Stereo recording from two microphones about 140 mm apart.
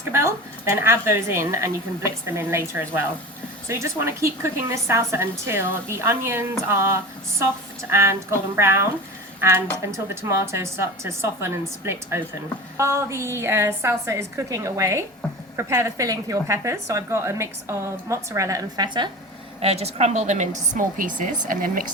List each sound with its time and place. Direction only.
0.1 s a woman's voice: 20° right (ahead or behind)
19.6 s a woman's voice: 50° right (ahead or behind); by 21.3 s 70° right (ahead or behind)
21.4 s speech: 85° right